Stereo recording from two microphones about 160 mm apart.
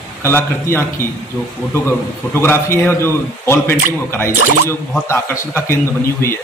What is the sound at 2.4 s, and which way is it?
A man's voice, 15° left (ahead or behind).